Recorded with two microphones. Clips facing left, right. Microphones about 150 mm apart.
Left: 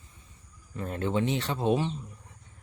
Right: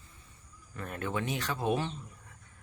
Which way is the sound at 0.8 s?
25° left (ahead or behind).